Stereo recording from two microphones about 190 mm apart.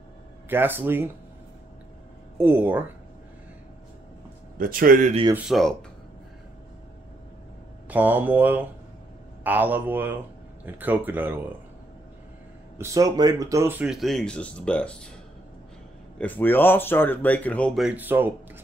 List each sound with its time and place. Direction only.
0.5 s speech: 10° right (ahead or behind)
2.3 s speech: 10° right (ahead or behind)
4.6 s speech: 45° right (ahead or behind)
5.3 s speech: centre (ahead or behind)
7.9 s speech: 10° right (ahead or behind)
12.7 s speech: 15° right (ahead or behind); by 15.0 s 5° left (ahead or behind)
16.2 s speech: 10° left (ahead or behind); by 18.3 s 10° right (ahead or behind)